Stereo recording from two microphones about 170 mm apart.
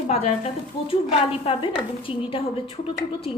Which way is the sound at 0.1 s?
40° left (ahead or behind).